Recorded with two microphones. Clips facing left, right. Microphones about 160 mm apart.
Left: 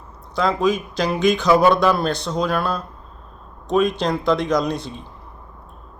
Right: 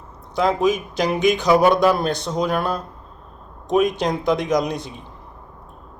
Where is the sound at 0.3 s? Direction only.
15° right (ahead or behind).